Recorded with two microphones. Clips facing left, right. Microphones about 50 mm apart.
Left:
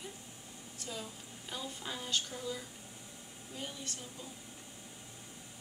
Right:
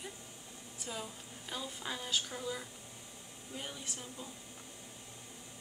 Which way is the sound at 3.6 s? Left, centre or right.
Centre.